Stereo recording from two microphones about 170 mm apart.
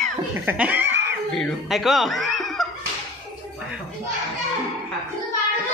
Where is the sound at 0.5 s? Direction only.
10° right (ahead or behind).